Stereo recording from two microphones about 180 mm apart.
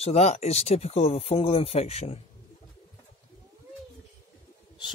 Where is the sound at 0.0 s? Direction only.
40° left (ahead or behind).